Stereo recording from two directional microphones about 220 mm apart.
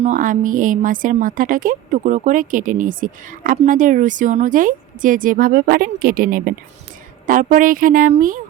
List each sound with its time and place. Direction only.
0.0 s a woman's voice: 35° right (ahead or behind)